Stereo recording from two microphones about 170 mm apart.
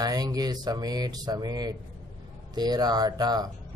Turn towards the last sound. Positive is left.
turn(degrees=-25)  # may be behind; listen again after turning